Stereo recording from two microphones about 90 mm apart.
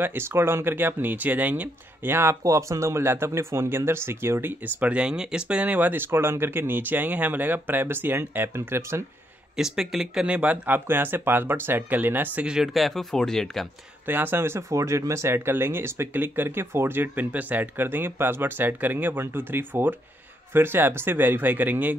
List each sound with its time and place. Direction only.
0.0 s speech: 25° right (ahead or behind)
2.1 s speech: 30° right (ahead or behind)
9.6 s speech: 5° right (ahead or behind)
10.2 s speech: 15° right (ahead or behind)
12.4 s speech: 5° right (ahead or behind)
14.0 s speech: 20° right (ahead or behind)